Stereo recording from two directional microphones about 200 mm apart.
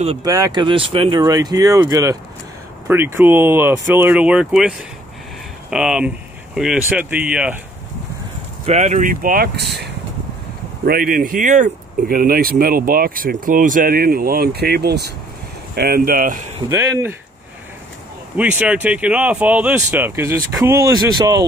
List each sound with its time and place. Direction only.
0.2 s speech: 20° right (ahead or behind)
8.6 s speech: 35° right (ahead or behind)
16.6 s speech: 15° right (ahead or behind)
18.3 s speech: 5° right (ahead or behind)